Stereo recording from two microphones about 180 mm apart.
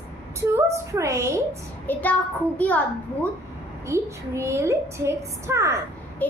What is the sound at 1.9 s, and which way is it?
Speech, 10° left (ahead or behind).